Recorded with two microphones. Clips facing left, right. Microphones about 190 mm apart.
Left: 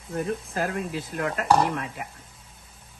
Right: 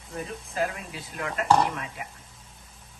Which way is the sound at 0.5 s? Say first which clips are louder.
Right 1 dB; 55° left (ahead or behind).